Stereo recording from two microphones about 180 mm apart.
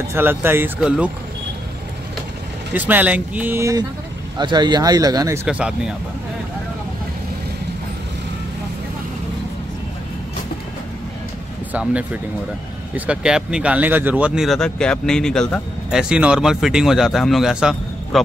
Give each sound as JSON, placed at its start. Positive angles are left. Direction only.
{"t": 0.1, "sound": "speech", "side_deg": -10}
{"t": 2.7, "sound": "speech", "side_deg": -10}
{"t": 11.7, "sound": "speech", "side_deg": -5}